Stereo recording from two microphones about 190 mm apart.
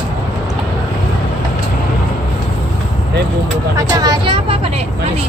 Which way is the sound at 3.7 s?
20° right (ahead or behind).